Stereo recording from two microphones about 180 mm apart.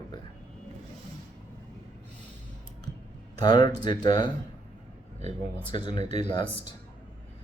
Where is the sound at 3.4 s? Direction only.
25° left (ahead or behind).